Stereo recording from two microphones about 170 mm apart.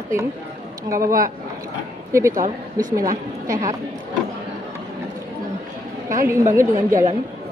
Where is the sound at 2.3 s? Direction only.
50° right (ahead or behind).